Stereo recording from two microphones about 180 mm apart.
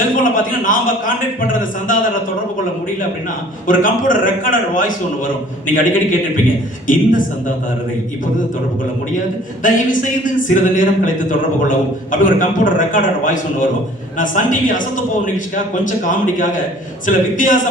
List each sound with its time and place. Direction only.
0.2 s speech: 50° left (ahead or behind)
3.7 s speech: 50° left (ahead or behind)
9.6 s speech: 45° left (ahead or behind)